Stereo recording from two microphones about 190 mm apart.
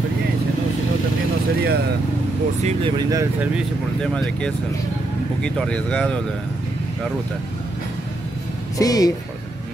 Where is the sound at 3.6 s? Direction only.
5° left (ahead or behind).